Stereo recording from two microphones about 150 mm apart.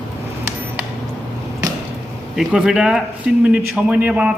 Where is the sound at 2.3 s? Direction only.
5° right (ahead or behind).